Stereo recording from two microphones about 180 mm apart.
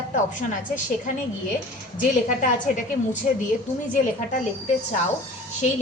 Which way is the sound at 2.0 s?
45° left (ahead or behind).